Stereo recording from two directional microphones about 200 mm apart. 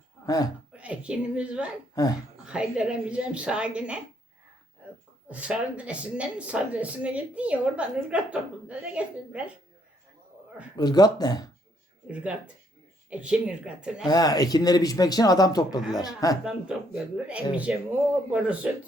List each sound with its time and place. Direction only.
0.7 s a woman's voice: 5° right (ahead or behind)
2.0 s speech: 15° left (ahead or behind)
2.4 s a woman's voice: 5° right (ahead or behind)
4.8 s a sound: 5° right (ahead or behind)
5.3 s a woman's voice: 5° right (ahead or behind)
10.8 s a man's voice: 20° left (ahead or behind)
12.1 s a woman's voice: 5° right (ahead or behind)
14.1 s a man's voice: 20° left (ahead or behind)
16.4 s a woman's voice: 5° right (ahead or behind)